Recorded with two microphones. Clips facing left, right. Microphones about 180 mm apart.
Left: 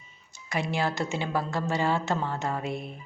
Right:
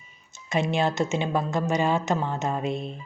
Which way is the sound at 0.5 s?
20° right (ahead or behind).